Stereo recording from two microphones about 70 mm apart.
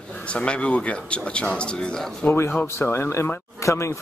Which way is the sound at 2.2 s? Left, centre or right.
Left.